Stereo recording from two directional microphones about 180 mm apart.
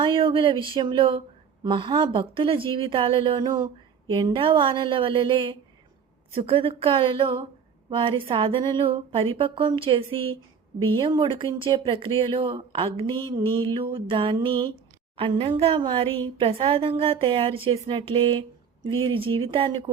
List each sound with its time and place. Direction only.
0.0 s a woman's voice: 30° right (ahead or behind)